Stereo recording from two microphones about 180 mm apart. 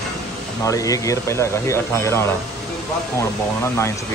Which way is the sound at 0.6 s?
20° left (ahead or behind).